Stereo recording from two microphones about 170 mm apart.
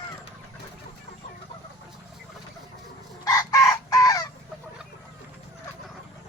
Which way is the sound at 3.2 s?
20° left (ahead or behind).